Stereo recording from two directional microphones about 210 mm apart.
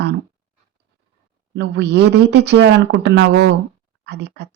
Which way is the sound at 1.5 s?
55° right (ahead or behind).